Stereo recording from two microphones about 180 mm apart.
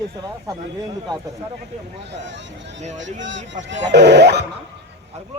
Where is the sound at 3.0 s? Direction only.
90° right.